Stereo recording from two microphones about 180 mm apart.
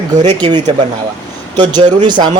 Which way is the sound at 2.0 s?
25° right (ahead or behind).